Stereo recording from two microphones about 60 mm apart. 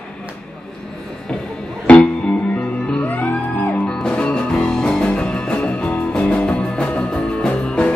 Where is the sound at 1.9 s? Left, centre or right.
Left.